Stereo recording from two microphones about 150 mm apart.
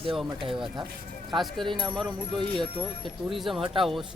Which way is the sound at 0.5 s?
5° right (ahead or behind).